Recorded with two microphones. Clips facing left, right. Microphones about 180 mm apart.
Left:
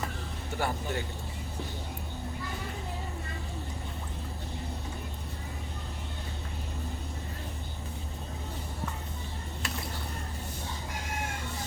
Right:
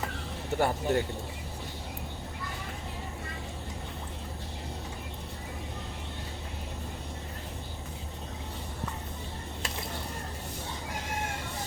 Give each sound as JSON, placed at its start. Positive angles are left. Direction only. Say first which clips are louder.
{"t": 0.6, "sound": "speech", "louder": "right 5 dB", "side_deg": -50}